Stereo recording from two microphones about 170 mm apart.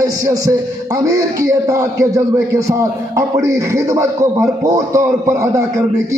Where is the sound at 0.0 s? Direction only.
20° right (ahead or behind).